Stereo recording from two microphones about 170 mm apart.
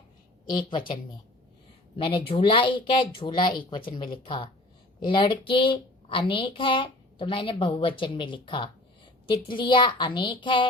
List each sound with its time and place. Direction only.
0.4 s a woman's voice: 25° left (ahead or behind)
2.0 s a woman's voice: 30° left (ahead or behind)